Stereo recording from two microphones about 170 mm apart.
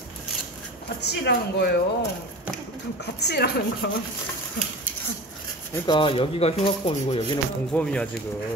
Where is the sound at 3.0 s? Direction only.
75° left (ahead or behind).